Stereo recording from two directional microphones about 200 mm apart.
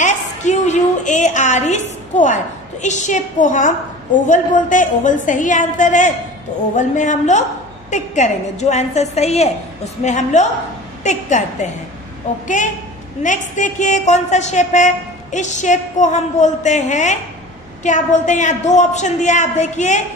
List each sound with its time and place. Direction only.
0.0 s a woman's voice: 35° left (ahead or behind)
13.2 s a woman's voice: 40° left (ahead or behind)